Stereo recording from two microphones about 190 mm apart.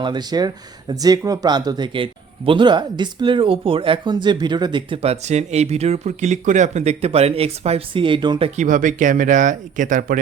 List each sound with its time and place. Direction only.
0.0 s speech: 20° right (ahead or behind); by 10.2 s 45° right (ahead or behind)